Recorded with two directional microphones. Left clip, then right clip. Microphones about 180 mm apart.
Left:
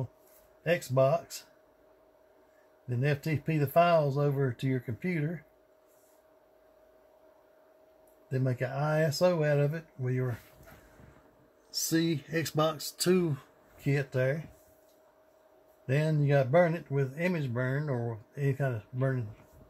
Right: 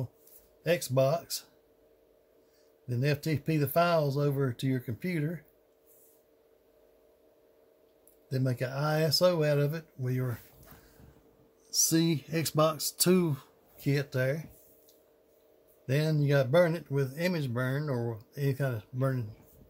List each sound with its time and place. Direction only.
0.7 s speech: centre (ahead or behind)
2.9 s speech: centre (ahead or behind)
8.3 s speech: centre (ahead or behind)
11.7 s speech: 20° right (ahead or behind)
13.3 s speech: centre (ahead or behind)
15.9 s speech: centre (ahead or behind)